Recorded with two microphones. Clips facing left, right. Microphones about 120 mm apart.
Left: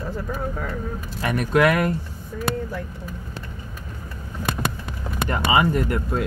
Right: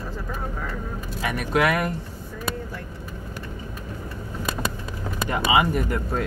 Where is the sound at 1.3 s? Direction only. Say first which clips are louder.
Left 4 dB; 5° right (ahead or behind).